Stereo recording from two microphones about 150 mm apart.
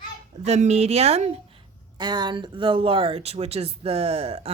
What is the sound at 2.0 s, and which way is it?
Speech, 30° right (ahead or behind).